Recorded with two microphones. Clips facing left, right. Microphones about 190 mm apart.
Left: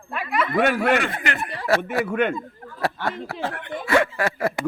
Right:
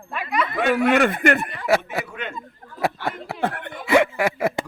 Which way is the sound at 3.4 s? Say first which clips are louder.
Right 4 dB; 60° right (ahead or behind).